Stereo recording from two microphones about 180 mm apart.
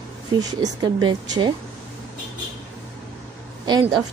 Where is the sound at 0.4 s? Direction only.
20° right (ahead or behind).